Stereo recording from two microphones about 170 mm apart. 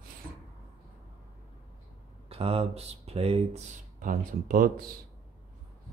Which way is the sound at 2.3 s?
35° right (ahead or behind).